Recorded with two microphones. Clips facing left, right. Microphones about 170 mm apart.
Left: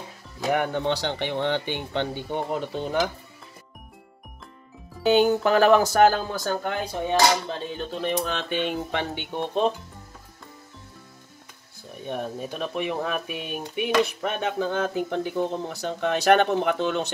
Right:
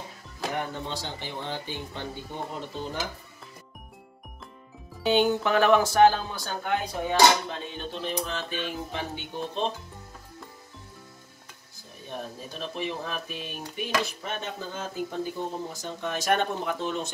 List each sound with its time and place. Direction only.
0.5 s speech: 75° left (ahead or behind)
5.0 s speech: 40° left (ahead or behind)
7.9 s speech: 65° left (ahead or behind)
12.1 s speech: 60° left (ahead or behind)